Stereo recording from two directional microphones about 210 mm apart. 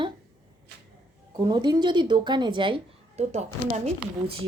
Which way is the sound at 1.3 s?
20° right (ahead or behind).